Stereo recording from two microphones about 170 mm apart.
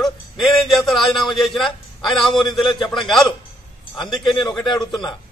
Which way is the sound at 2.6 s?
30° left (ahead or behind).